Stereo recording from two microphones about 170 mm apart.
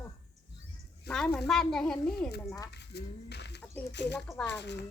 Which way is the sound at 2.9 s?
85° left.